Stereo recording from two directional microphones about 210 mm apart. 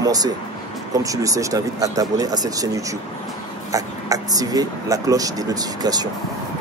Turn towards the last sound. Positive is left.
turn(degrees=-20)  # may be behind; listen again after turning